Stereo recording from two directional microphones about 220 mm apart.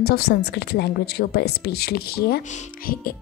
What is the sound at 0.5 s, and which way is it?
A woman's voice, 45° left (ahead or behind).